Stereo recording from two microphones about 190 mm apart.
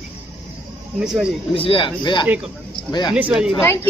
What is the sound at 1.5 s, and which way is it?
Speech, 30° left (ahead or behind).